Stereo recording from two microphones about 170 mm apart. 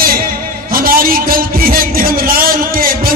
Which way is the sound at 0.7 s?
60° right (ahead or behind).